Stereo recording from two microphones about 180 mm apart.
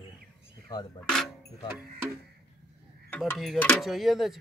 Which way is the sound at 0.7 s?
20° left (ahead or behind).